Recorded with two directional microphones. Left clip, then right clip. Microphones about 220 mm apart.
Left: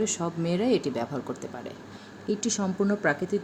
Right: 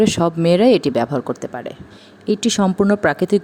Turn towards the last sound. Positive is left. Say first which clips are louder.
# right 10 dB
turn(degrees=-45)  # may be behind; listen again after turning